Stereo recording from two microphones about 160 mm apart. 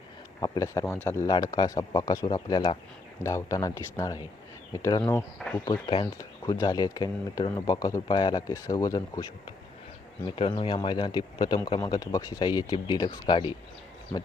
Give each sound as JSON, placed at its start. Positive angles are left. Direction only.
{"t": 0.3, "sound": "speech", "side_deg": 25}
{"t": 5.4, "sound": "speech", "side_deg": 5}
{"t": 5.8, "sound": "speech", "side_deg": 35}
{"t": 10.2, "sound": "speech", "side_deg": 30}